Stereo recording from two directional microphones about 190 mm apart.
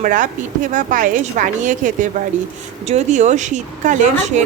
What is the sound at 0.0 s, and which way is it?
A woman's voice, 45° right (ahead or behind).